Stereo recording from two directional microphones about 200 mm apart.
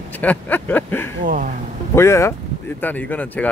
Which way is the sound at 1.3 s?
40° right (ahead or behind).